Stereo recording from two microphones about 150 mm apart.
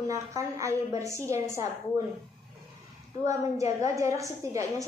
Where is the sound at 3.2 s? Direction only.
20° right (ahead or behind).